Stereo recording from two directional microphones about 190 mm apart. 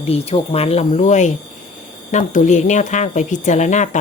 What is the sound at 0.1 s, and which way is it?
A woman's voice, 30° left (ahead or behind).